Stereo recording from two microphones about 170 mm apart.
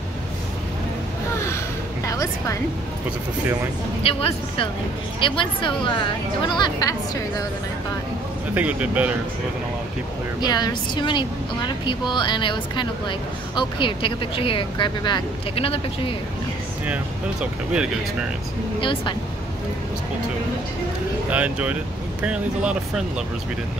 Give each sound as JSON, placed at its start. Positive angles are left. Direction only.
{"t": 2.0, "sound": "music", "side_deg": 20}
{"t": 4.0, "sound": "a woman's voice", "side_deg": 35}
{"t": 8.5, "sound": "speech", "side_deg": -10}
{"t": 10.4, "sound": "a woman's voice", "side_deg": 25}
{"t": 16.8, "sound": "speech", "side_deg": -5}
{"t": 18.8, "sound": "a woman's voice", "side_deg": 30}
{"t": 21.3, "sound": "speech", "side_deg": -10}